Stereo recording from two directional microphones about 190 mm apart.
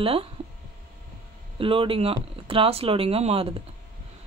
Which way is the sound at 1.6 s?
30° right (ahead or behind).